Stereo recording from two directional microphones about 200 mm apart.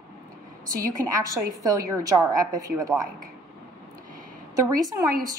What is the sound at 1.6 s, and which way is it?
A woman's voice, 15° right (ahead or behind).